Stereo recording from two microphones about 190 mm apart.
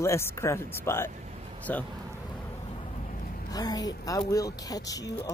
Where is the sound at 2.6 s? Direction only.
30° left (ahead or behind).